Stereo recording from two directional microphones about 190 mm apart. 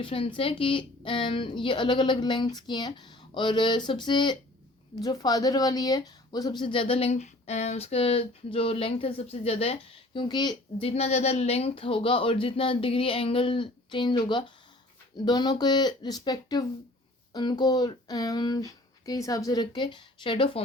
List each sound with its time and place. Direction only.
0.0 s speech: 25° left (ahead or behind)